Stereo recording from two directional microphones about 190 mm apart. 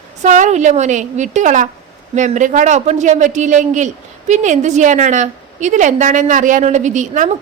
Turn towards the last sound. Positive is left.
turn(degrees=-40)  # may be behind; listen again after turning